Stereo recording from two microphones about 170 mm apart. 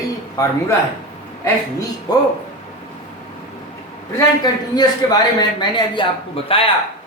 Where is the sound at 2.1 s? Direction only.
25° left (ahead or behind).